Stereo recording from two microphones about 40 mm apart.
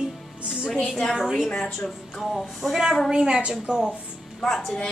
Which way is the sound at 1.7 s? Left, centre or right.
Centre.